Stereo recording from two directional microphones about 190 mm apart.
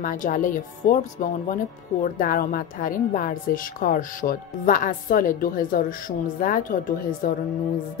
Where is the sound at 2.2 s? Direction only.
50° left (ahead or behind).